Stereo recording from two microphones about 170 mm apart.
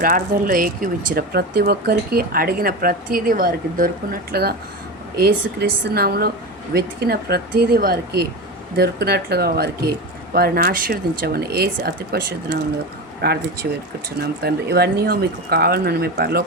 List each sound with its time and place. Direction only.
0.0 s speech: 55° right (ahead or behind)
5.5 s speech: 75° right (ahead or behind)